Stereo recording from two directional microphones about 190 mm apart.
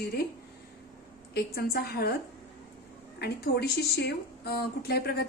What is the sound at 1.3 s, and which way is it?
Speech, 55° left (ahead or behind).